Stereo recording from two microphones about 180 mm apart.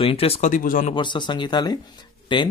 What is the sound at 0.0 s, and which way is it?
Speech, 30° left (ahead or behind).